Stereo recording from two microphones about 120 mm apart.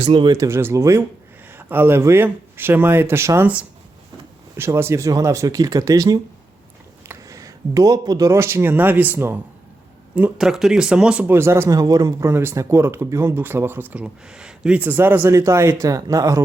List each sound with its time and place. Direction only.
0.0 s speech: 45° right (ahead or behind)
0.3 s speech: 20° right (ahead or behind)
4.5 s speech: 20° right (ahead or behind)
13.9 s speech: 10° right (ahead or behind); by 16.4 s 30° right (ahead or behind)